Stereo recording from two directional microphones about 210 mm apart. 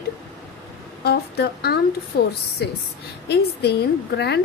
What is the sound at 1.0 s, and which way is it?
A woman's voice, 50° left (ahead or behind).